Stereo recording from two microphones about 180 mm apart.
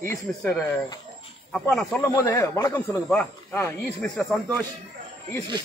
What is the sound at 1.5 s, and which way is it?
Speech, centre (ahead or behind).